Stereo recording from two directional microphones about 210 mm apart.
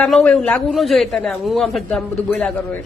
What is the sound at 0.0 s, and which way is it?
A man's voice, 5° left (ahead or behind).